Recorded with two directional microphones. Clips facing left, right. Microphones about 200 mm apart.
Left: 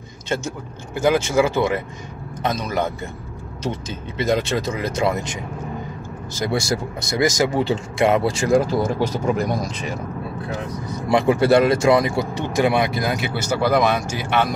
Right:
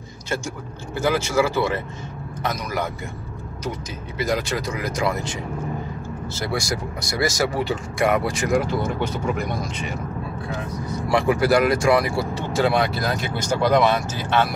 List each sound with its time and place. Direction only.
0.9 s speech: 15° left (ahead or behind)
4.2 s speech: 25° left (ahead or behind)
11.1 s speech: 20° left (ahead or behind)